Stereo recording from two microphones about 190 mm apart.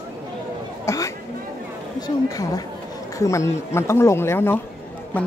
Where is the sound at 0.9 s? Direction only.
15° left (ahead or behind).